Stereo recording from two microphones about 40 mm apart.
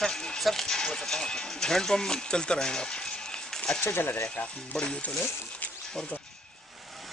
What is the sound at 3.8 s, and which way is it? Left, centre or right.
Speech, left.